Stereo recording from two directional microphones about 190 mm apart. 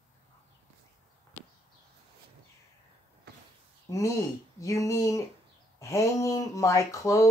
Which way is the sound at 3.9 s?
15° left (ahead or behind).